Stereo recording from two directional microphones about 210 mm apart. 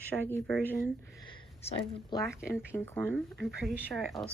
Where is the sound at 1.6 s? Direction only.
20° left (ahead or behind).